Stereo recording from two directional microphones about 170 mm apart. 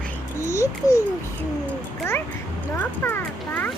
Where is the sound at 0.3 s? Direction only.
15° left (ahead or behind).